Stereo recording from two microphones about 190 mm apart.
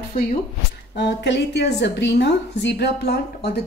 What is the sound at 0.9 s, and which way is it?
A woman's voice, 65° left (ahead or behind).